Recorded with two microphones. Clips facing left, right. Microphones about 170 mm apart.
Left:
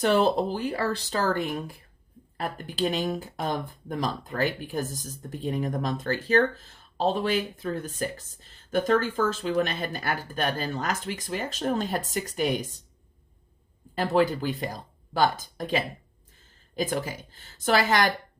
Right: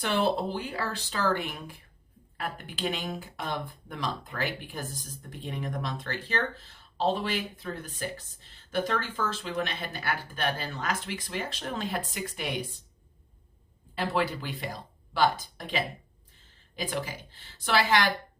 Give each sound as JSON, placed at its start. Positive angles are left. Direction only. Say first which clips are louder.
{"t": 0.0, "sound": "speech", "louder": "left 5 dB", "side_deg": 40}
{"t": 13.9, "sound": "speech", "louder": "left 6 dB", "side_deg": 45}